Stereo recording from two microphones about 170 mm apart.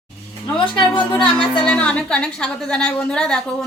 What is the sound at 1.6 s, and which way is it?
A woman's voice, 5° left (ahead or behind).